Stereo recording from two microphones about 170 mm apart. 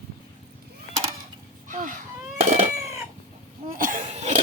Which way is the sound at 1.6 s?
50° right (ahead or behind).